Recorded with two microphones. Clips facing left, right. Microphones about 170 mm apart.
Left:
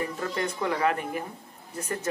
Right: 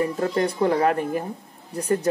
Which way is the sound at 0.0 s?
40° right (ahead or behind).